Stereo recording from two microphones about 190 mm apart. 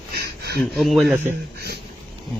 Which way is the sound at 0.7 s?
Centre (ahead or behind).